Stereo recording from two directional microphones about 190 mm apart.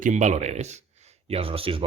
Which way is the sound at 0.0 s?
40° right (ahead or behind).